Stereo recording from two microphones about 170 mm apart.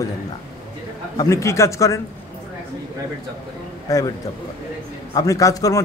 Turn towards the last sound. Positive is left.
turn(degrees=20)  # may be behind; listen again after turning